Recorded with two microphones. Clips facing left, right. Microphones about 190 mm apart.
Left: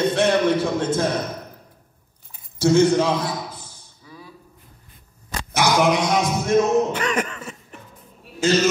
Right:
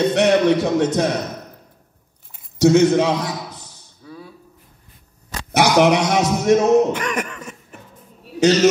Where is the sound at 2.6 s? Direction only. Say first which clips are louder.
Right 3 dB; 70° right (ahead or behind).